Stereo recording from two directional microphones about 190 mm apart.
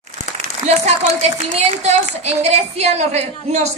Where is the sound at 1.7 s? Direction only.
35° right (ahead or behind).